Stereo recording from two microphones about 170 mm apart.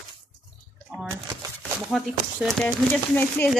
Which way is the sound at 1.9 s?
Centre (ahead or behind).